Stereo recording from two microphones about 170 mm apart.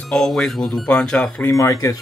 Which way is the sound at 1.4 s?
20° left (ahead or behind).